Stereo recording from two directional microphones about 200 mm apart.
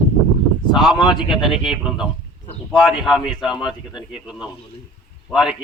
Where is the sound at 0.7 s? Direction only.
Centre (ahead or behind).